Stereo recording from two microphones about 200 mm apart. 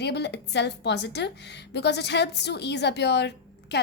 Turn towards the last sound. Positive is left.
turn(degrees=55)  # may be behind; listen again after turning